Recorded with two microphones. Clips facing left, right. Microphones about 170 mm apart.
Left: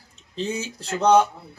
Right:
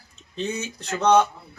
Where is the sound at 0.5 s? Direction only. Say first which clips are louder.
Left 1 dB; 30° left (ahead or behind).